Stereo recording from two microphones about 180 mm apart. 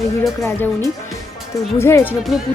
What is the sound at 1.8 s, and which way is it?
Speech, 15° left (ahead or behind).